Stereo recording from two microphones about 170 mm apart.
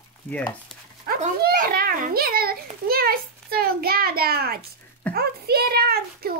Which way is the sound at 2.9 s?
60° right (ahead or behind).